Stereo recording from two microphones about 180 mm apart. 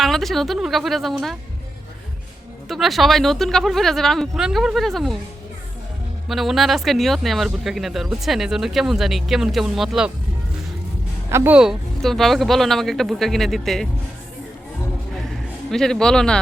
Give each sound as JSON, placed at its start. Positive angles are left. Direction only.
{"t": 0.0, "sound": "speech", "side_deg": 0}
{"t": 2.6, "sound": "speech", "side_deg": 0}
{"t": 6.2, "sound": "speech", "side_deg": 0}
{"t": 11.3, "sound": "speech", "side_deg": -10}
{"t": 15.2, "sound": "a sound", "side_deg": 0}